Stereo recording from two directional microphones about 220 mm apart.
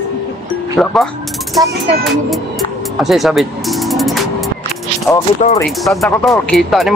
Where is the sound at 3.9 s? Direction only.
Centre (ahead or behind).